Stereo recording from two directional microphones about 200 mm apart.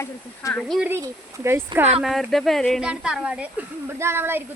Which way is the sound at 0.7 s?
5° right (ahead or behind).